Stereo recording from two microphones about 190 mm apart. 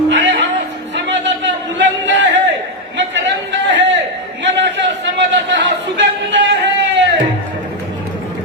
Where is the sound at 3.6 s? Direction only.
70° right (ahead or behind).